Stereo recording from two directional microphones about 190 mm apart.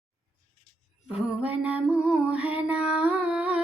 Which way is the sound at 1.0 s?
5° right (ahead or behind).